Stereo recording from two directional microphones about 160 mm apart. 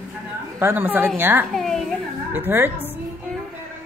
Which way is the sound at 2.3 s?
15° right (ahead or behind).